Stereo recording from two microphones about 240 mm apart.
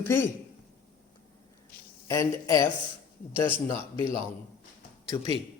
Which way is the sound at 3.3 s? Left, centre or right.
Right.